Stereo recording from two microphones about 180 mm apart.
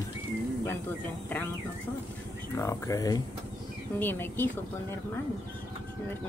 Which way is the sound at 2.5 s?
15° left (ahead or behind).